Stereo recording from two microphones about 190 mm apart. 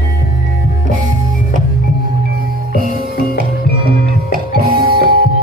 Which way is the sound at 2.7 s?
50° right (ahead or behind).